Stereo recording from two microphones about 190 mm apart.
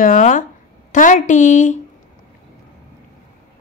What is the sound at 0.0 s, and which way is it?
A woman's voice, 45° left (ahead or behind).